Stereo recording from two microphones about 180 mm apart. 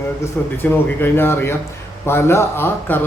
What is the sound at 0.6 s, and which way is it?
A man's voice, 10° left (ahead or behind).